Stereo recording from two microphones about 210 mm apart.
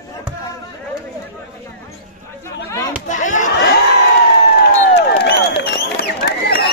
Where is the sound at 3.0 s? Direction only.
35° left (ahead or behind).